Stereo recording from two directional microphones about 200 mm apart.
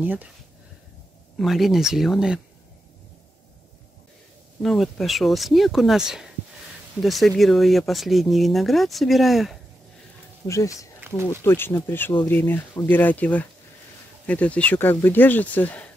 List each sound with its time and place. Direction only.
0.0 s speech: 10° right (ahead or behind)
1.3 s speech: centre (ahead or behind)
4.6 s speech: centre (ahead or behind)
10.4 s speech: 15° left (ahead or behind)
11.0 s a sound: 10° right (ahead or behind)
11.2 s speech: 10° left (ahead or behind)